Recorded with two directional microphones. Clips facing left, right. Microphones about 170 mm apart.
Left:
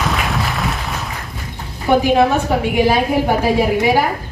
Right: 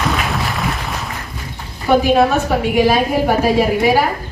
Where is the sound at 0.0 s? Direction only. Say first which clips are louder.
Even; centre (ahead or behind).